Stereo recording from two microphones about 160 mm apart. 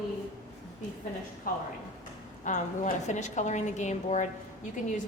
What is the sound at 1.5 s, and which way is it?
Speech, 60° left (ahead or behind).